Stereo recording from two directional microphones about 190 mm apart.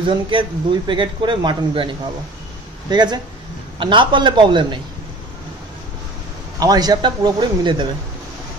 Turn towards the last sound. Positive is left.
turn(degrees=-25)  # may be behind; listen again after turning